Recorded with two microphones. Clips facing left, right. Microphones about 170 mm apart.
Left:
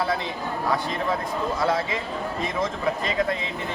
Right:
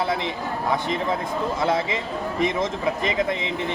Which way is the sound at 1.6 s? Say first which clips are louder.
Right 2 dB; 20° right (ahead or behind).